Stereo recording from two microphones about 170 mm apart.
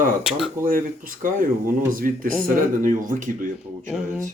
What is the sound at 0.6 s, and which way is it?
Speech, 55° right (ahead or behind).